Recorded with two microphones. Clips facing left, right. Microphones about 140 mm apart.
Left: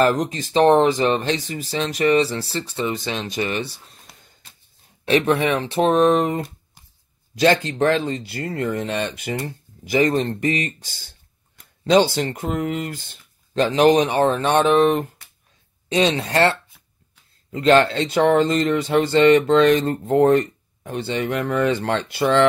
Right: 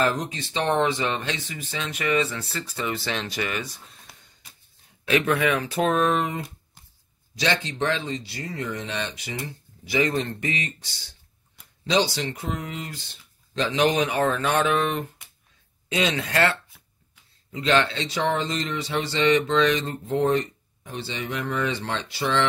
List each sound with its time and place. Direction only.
0.0 s speech: 45° left (ahead or behind); by 3.8 s 30° left (ahead or behind)
5.0 s speech: 30° left (ahead or behind)
17.5 s speech: 45° left (ahead or behind)